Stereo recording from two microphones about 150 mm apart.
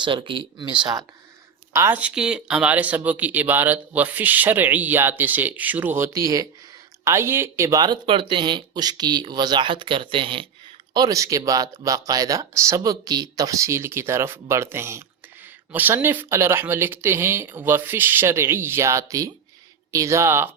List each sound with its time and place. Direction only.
0.0 s speech: 35° right (ahead or behind)
1.7 s speech: 15° right (ahead or behind); by 10.4 s 35° right (ahead or behind)
10.9 s speech: 25° right (ahead or behind)